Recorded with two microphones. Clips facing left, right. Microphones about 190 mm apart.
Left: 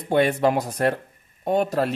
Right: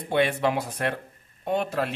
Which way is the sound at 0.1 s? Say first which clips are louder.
Left 4 dB; 40° left (ahead or behind).